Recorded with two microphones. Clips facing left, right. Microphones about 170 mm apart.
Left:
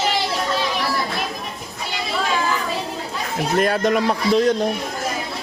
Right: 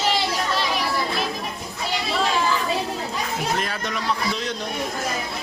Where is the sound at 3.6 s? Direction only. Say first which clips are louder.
Left 10 dB; 50° left (ahead or behind).